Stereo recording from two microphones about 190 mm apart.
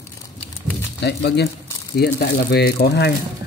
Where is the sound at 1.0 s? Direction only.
60° left (ahead or behind).